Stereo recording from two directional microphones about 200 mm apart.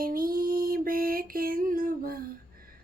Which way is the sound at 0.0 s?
45° right (ahead or behind).